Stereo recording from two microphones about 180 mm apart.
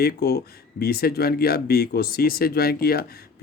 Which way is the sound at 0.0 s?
60° left (ahead or behind).